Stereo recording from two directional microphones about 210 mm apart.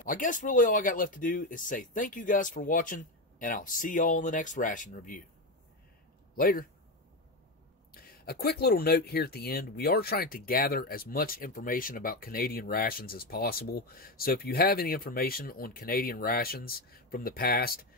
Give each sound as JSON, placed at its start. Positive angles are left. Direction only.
{"t": 0.0, "sound": "speech", "side_deg": 40}
{"t": 6.3, "sound": "speech", "side_deg": 45}
{"t": 7.9, "sound": "speech", "side_deg": 45}